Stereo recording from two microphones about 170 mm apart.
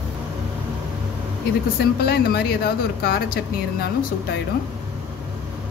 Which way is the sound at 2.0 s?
65° left (ahead or behind).